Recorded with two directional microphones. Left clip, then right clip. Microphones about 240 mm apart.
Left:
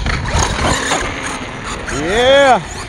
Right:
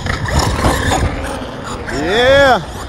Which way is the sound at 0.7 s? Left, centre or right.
Centre.